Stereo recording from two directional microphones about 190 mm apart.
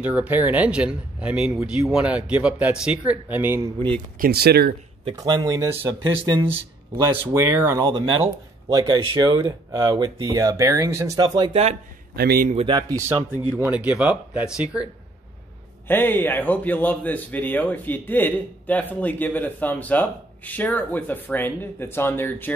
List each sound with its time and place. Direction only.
0.0 s speech: 5° right (ahead or behind)
4.2 s speech: 55° right (ahead or behind)
5.0 s speech: 20° right (ahead or behind)
12.2 s a man's voice: 50° right (ahead or behind)
12.5 s speech: 25° right (ahead or behind)
13.6 s speech: 5° right (ahead or behind)
15.9 s a man's voice: 10° left (ahead or behind)